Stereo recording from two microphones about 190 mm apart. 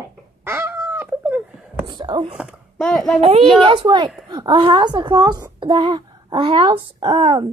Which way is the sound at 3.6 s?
25° right (ahead or behind).